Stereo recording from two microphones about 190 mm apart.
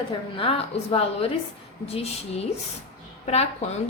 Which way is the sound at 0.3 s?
30° left (ahead or behind).